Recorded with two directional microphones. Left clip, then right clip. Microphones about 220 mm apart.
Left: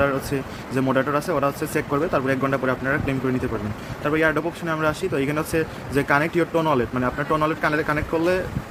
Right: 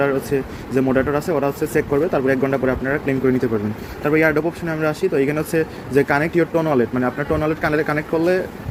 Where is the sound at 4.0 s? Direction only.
15° right (ahead or behind).